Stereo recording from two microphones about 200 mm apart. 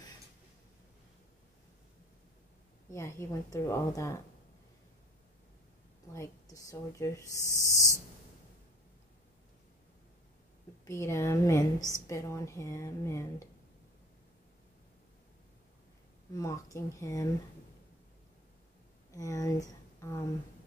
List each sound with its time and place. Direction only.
2.9 s a woman's voice: 15° left (ahead or behind)
6.1 s a woman's voice: 15° left (ahead or behind)
7.4 s a sound: 15° right (ahead or behind)
10.9 s a woman's voice: 15° left (ahead or behind)
16.3 s a woman's voice: 15° left (ahead or behind)
19.1 s speech: 15° left (ahead or behind)